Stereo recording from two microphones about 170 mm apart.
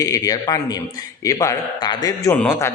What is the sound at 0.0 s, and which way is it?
A man's voice, 20° left (ahead or behind).